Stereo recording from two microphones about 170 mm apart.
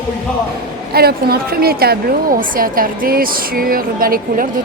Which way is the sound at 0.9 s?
65° right (ahead or behind).